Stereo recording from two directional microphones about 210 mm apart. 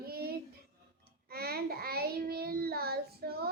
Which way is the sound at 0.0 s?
45° right (ahead or behind).